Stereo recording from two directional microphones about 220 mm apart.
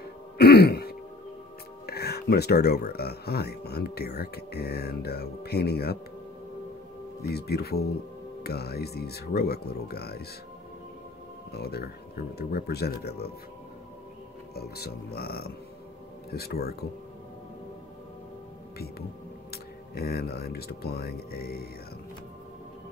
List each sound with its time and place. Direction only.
0.4 s throat clearing: 45° left (ahead or behind)
1.9 s speech: 45° left (ahead or behind)
7.2 s speech: 45° left (ahead or behind)
11.5 s speech: 45° left (ahead or behind)
14.5 s speech: 45° left (ahead or behind)
19.5 s speech: 45° left (ahead or behind)